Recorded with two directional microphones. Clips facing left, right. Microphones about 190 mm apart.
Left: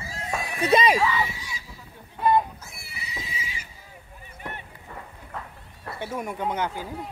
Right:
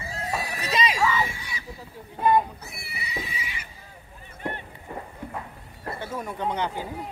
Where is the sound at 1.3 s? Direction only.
60° right (ahead or behind).